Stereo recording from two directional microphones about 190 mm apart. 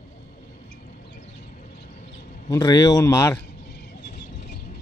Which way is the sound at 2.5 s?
20° left (ahead or behind).